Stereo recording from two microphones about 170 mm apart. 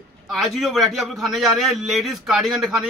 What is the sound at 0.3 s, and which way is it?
A man's voice, centre (ahead or behind).